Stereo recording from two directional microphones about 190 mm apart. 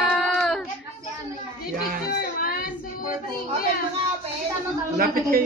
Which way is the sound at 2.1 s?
55° left (ahead or behind).